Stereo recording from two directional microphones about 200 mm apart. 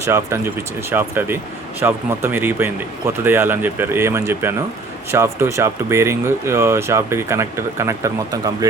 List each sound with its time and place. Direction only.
0.0 s speech: 15° right (ahead or behind)